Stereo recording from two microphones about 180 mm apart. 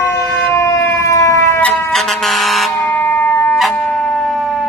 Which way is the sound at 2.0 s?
Centre (ahead or behind).